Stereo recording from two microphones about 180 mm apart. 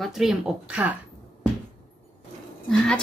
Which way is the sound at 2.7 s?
5° left (ahead or behind).